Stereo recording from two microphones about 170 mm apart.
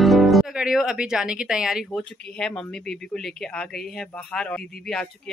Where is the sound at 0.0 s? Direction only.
Centre (ahead or behind).